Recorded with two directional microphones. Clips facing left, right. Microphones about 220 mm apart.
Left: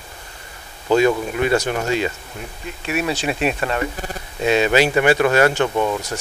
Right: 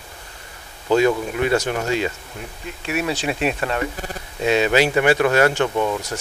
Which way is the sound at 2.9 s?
15° left (ahead or behind).